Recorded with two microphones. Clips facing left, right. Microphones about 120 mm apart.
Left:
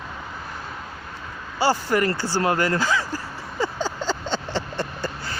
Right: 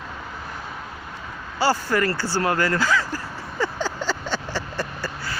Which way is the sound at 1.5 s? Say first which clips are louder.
Even; 15° left (ahead or behind).